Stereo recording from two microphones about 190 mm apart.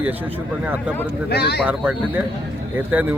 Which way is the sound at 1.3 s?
60° left (ahead or behind).